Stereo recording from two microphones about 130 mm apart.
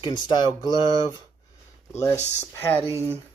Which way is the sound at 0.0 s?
35° left (ahead or behind).